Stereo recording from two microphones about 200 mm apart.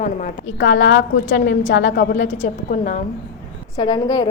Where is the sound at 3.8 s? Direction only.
20° left (ahead or behind).